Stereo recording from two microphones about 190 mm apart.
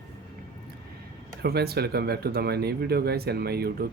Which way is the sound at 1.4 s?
55° right (ahead or behind).